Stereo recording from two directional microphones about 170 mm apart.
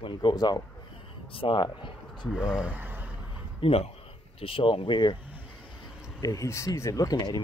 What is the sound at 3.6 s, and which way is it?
Speech, 35° left (ahead or behind).